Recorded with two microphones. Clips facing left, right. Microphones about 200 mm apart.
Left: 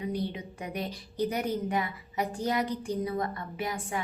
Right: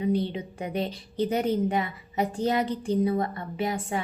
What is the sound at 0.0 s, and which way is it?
A woman's voice, 25° right (ahead or behind).